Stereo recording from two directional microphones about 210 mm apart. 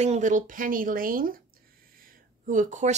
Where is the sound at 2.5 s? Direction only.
35° right (ahead or behind).